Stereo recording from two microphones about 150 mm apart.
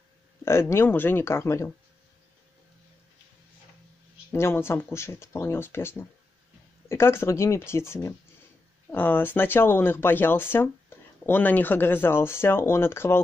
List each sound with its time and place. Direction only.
0.5 s speech: 15° left (ahead or behind)
4.3 s speech: 15° left (ahead or behind)